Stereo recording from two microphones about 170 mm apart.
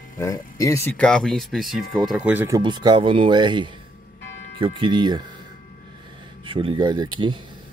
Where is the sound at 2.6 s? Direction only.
25° right (ahead or behind).